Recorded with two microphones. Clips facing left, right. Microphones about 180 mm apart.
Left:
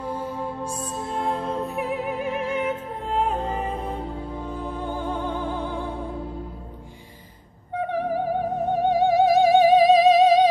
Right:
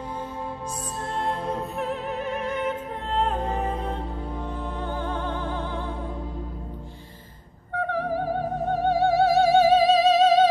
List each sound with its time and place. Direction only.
1.8 s music: 10° left (ahead or behind)
7.7 s music: 15° left (ahead or behind)